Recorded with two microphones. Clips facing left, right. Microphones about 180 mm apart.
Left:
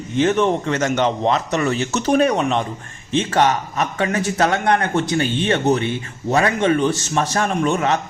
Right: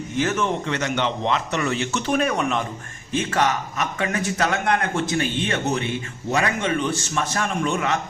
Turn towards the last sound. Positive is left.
turn(degrees=40)  # may be behind; listen again after turning